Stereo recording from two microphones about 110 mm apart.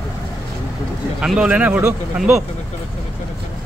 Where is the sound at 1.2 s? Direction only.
10° right (ahead or behind).